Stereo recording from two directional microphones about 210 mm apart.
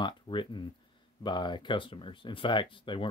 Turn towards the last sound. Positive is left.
turn(degrees=25)  # may be behind; listen again after turning